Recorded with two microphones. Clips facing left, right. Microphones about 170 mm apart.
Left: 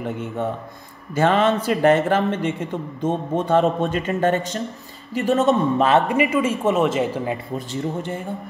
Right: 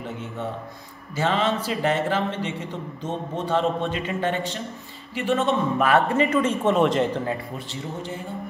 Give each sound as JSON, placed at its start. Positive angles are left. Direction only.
{"t": 1.1, "sound": "a man's voice", "side_deg": 55}
{"t": 5.8, "sound": "a man's voice", "side_deg": 25}
{"t": 6.0, "sound": "speech", "side_deg": 10}